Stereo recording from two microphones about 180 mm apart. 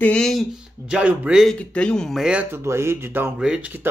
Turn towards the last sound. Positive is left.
turn(degrees=-5)  # may be behind; listen again after turning